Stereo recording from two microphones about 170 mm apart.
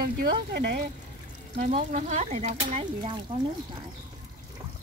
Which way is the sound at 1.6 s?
45° right (ahead or behind).